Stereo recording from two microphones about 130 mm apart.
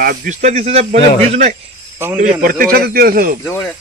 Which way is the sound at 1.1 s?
60° right (ahead or behind).